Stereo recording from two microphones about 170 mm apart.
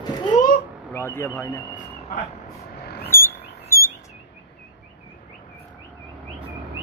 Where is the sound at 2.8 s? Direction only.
70° left (ahead or behind).